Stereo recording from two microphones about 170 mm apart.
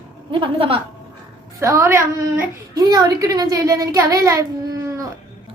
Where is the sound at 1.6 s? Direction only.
15° right (ahead or behind).